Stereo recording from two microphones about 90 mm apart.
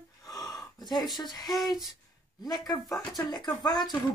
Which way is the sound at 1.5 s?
Centre (ahead or behind).